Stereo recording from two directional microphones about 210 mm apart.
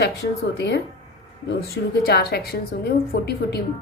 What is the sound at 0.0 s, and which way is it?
Speech, 55° left (ahead or behind).